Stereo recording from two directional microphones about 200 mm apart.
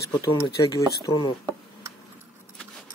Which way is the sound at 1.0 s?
20° left (ahead or behind).